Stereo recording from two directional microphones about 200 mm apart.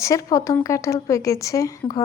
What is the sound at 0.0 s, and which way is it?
A woman's voice, 15° left (ahead or behind).